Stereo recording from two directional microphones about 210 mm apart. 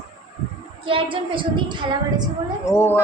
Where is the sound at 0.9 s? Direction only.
25° right (ahead or behind).